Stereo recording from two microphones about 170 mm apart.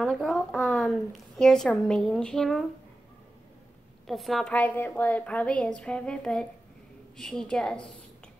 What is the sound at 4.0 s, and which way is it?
A woman's voice, centre (ahead or behind).